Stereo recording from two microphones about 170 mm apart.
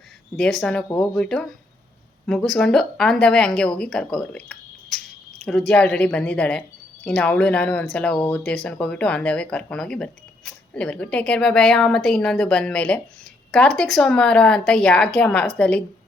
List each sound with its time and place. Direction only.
0.3 s speech: 5° left (ahead or behind)